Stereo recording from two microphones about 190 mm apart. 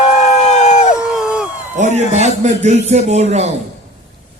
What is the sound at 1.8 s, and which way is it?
A man's voice, 35° right (ahead or behind).